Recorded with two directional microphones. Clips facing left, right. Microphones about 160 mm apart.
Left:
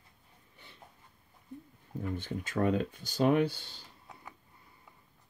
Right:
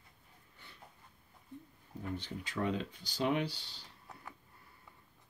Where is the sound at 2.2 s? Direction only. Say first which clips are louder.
Left 7 dB; 50° left (ahead or behind).